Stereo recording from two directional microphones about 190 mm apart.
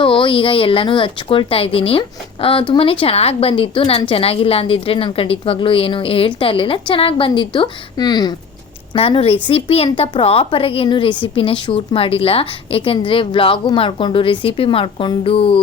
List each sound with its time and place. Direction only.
0.0 s a woman's voice: 25° left (ahead or behind)